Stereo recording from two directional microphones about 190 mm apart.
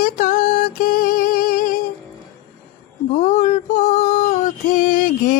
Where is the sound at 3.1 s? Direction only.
40° left (ahead or behind).